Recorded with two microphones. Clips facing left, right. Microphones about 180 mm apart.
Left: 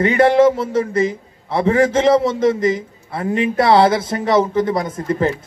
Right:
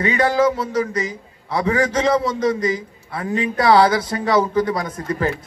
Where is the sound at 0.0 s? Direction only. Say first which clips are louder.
Left 5 dB; 25° left (ahead or behind).